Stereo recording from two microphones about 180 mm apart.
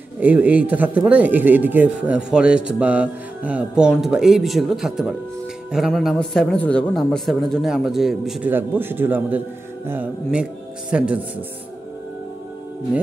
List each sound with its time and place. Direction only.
0.2 s a man's voice: 10° right (ahead or behind)